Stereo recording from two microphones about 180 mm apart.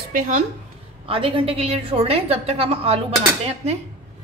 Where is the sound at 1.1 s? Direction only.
30° right (ahead or behind).